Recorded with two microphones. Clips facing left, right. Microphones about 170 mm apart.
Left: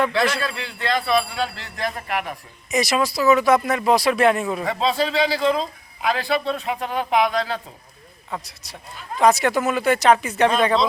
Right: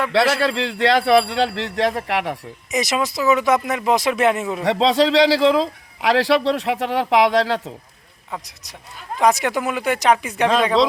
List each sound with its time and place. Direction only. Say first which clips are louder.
0.1 s speech: right 5 dB; 75° right (ahead or behind)
2.7 s speech: left 1 dB; 20° right (ahead or behind)
4.6 s speech: right 8 dB; 80° right
9.1 s speech: left 1 dB; 15° right (ahead or behind)